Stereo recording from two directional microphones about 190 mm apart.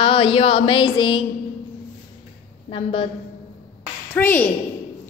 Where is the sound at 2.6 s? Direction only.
30° left (ahead or behind).